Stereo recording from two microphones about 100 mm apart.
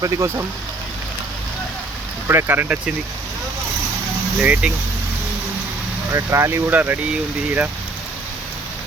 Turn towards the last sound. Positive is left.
turn(degrees=-20)  # may be behind; listen again after turning